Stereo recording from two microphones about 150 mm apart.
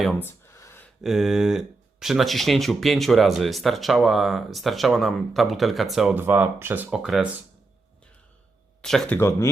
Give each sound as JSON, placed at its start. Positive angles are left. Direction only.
{"t": 0.2, "sound": "a sound", "side_deg": 15}
{"t": 1.0, "sound": "speech", "side_deg": 0}
{"t": 6.1, "sound": "speech", "side_deg": -15}
{"t": 8.8, "sound": "speech", "side_deg": 5}
{"t": 9.1, "sound": "speech", "side_deg": 20}